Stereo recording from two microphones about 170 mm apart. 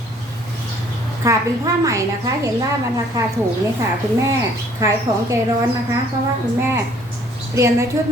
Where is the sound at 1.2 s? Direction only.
20° right (ahead or behind).